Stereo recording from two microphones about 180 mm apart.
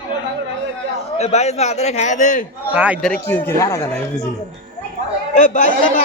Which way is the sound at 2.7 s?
10° right (ahead or behind).